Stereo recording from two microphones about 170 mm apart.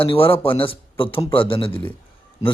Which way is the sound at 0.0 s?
30° left (ahead or behind).